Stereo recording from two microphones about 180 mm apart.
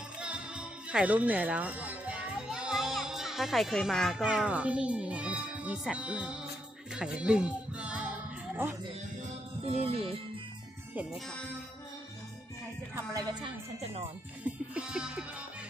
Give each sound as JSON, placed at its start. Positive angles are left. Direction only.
{"t": 0.2, "sound": "music", "side_deg": -5}
{"t": 8.6, "sound": "speech", "side_deg": -10}
{"t": 9.6, "sound": "speech", "side_deg": -35}
{"t": 13.0, "sound": "music", "side_deg": -20}
{"t": 14.4, "sound": "music", "side_deg": -5}